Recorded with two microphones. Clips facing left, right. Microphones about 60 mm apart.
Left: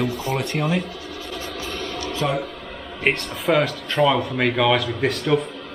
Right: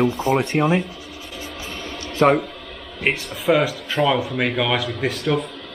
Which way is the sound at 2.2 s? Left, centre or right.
Right.